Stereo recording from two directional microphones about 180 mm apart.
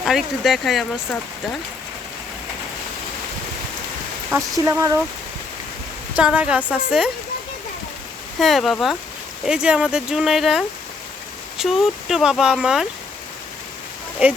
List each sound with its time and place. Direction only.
0.0 s speech: centre (ahead or behind)
4.4 s a woman's voice: 15° right (ahead or behind)
6.1 s a woman's voice: 5° right (ahead or behind)
8.4 s speech: centre (ahead or behind)